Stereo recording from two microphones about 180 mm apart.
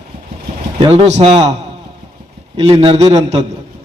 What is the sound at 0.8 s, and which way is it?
Speech, 30° right (ahead or behind).